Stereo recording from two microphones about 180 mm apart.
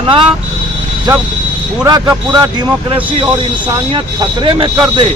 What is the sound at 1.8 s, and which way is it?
A man's voice, 20° right (ahead or behind).